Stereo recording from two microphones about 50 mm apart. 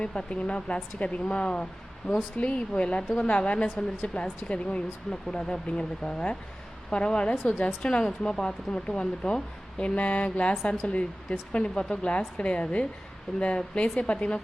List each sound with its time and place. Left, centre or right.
0.0 s speech: centre